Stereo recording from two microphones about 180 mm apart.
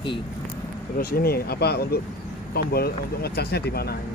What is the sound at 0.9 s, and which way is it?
Speech, 55° left (ahead or behind).